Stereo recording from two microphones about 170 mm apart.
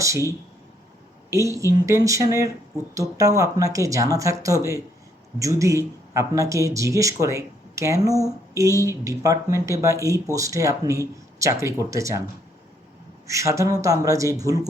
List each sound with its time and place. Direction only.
0.0 s speech: 20° right (ahead or behind)
13.2 s speech: 20° right (ahead or behind)